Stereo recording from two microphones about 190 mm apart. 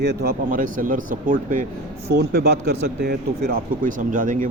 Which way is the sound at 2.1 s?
55° right (ahead or behind).